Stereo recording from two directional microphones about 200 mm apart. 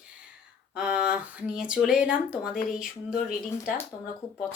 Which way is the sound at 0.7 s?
5° right (ahead or behind).